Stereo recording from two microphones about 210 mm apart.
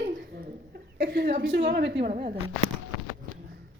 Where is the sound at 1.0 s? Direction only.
50° right (ahead or behind).